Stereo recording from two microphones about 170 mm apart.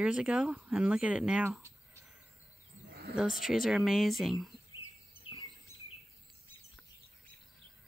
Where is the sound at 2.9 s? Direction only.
70° right (ahead or behind).